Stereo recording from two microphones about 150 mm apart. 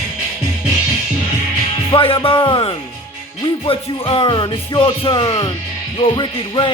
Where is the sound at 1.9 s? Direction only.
35° left (ahead or behind).